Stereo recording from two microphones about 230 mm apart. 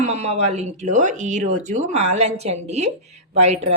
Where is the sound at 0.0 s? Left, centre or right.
Right.